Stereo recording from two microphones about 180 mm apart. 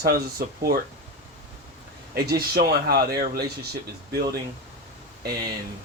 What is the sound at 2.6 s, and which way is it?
Speech, 60° right (ahead or behind).